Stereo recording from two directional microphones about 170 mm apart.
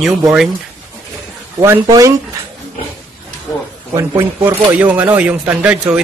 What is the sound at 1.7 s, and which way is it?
Speech, 20° right (ahead or behind).